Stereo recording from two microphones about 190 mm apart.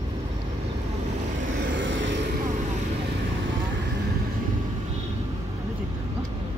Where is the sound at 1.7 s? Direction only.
75° right (ahead or behind).